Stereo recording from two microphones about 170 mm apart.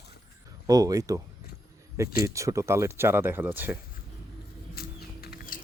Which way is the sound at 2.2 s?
20° right (ahead or behind).